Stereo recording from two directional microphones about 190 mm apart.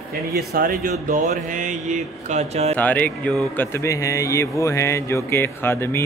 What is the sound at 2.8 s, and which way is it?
Speech, 10° left (ahead or behind).